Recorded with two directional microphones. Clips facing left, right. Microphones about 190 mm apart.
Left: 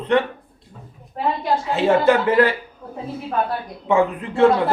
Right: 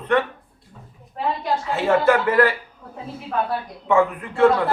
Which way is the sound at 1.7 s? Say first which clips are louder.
Left 2 dB; 20° left (ahead or behind).